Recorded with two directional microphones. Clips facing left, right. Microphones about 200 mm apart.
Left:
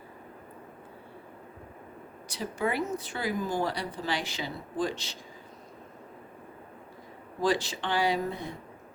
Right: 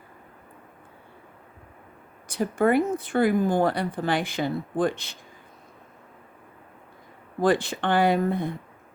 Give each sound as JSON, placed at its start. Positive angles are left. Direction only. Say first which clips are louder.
{"t": 2.2, "sound": "speech", "louder": "right 9 dB", "side_deg": -50}
{"t": 7.4, "sound": "speech", "louder": "right 6 dB", "side_deg": -55}